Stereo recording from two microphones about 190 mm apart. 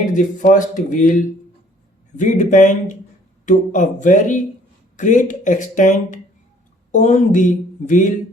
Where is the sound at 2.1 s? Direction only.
40° left (ahead or behind).